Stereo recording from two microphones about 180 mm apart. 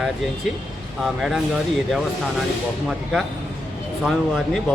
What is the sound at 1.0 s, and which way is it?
Speech, centre (ahead or behind).